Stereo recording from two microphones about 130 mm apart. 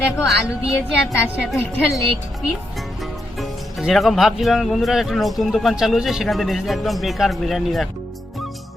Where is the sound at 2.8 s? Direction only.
Centre (ahead or behind).